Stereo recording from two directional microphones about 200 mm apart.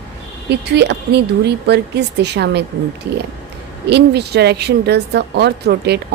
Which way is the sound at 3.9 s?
55° right (ahead or behind).